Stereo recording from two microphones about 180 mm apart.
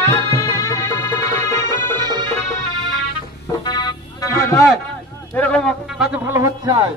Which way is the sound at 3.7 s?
20° left (ahead or behind).